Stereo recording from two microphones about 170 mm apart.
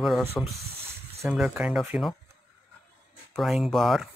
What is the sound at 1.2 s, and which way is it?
Speech, 5° right (ahead or behind).